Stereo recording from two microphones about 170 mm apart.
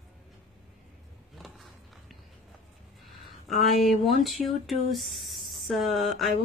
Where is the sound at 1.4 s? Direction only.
Centre (ahead or behind).